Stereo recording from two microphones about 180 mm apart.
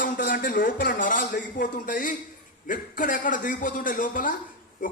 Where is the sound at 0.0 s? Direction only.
55° left (ahead or behind).